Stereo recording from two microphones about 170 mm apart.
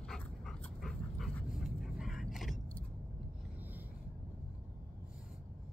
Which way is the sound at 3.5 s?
10° right (ahead or behind).